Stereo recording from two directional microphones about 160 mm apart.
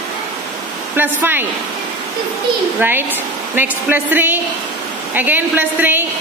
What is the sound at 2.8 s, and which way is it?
A woman's voice, 15° right (ahead or behind).